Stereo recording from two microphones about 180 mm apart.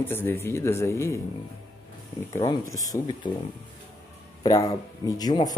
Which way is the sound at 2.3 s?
15° left (ahead or behind).